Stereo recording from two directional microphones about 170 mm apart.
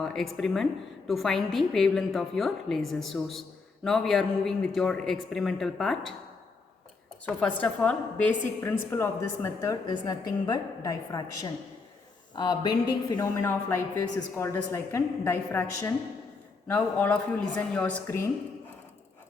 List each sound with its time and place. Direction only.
0.0 s a woman's voice: centre (ahead or behind)
7.3 s a woman's voice: 5° left (ahead or behind); by 12.7 s 25° left (ahead or behind)
13.1 s a woman's voice: 15° left (ahead or behind)